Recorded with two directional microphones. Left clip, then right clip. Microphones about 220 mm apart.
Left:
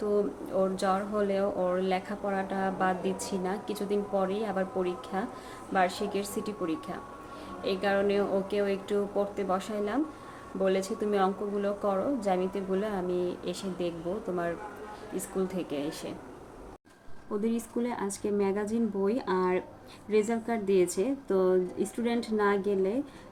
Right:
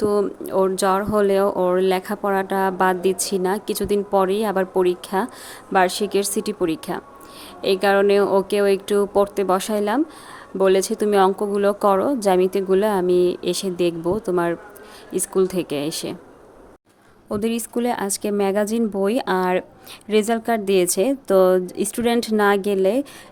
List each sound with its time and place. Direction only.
0.1 s speech: 55° right (ahead or behind)
17.3 s a woman's voice: 50° right (ahead or behind)